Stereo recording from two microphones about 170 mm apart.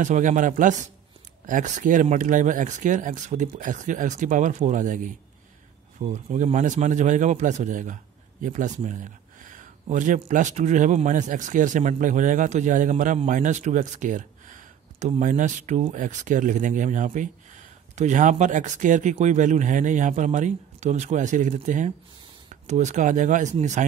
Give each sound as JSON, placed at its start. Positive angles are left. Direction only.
{"t": 0.0, "sound": "a man's voice", "side_deg": -45}